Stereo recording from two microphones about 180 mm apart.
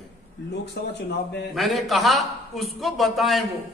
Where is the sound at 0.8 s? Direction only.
70° left (ahead or behind).